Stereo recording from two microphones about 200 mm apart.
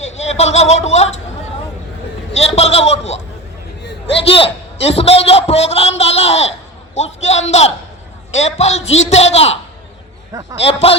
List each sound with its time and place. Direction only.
0.0 s a man's voice: 35° left (ahead or behind)
2.3 s a man's voice: 30° left (ahead or behind)
4.3 s a man's voice: 30° left (ahead or behind)
10.6 s a man's voice: 30° left (ahead or behind)